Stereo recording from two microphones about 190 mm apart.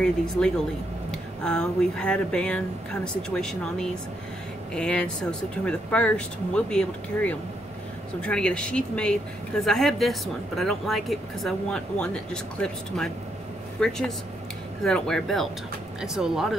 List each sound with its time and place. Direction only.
1.1 s speech: 5° left (ahead or behind)